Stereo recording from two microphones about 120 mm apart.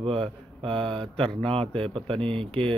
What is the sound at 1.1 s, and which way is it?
Speech, 5° left (ahead or behind).